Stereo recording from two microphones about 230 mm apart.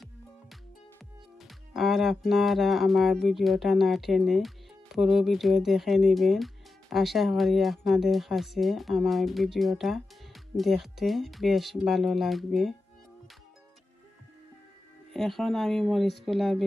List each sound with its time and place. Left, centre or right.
1.7 s speech: centre
15.1 s speech: centre